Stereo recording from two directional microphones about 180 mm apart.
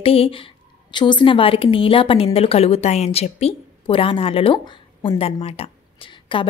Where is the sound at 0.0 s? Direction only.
30° left (ahead or behind).